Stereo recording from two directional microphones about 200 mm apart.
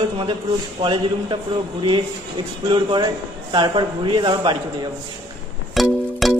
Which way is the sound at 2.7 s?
20° right (ahead or behind).